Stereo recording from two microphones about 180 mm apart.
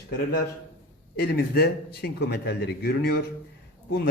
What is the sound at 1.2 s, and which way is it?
A man's voice, 60° left (ahead or behind).